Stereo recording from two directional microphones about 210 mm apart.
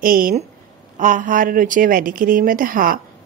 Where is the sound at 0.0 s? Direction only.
40° right (ahead or behind).